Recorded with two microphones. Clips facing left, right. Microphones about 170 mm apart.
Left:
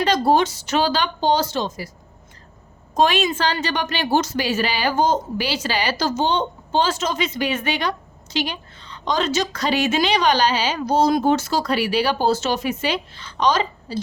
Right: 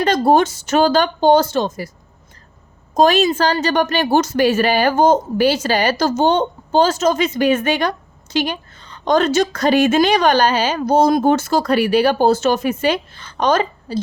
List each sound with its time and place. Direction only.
0.0 s a woman's voice: 50° right (ahead or behind)
2.9 s a woman's voice: 40° right (ahead or behind)